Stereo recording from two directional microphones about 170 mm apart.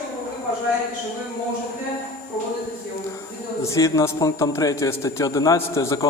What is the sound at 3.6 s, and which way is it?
A man's voice, 20° left (ahead or behind).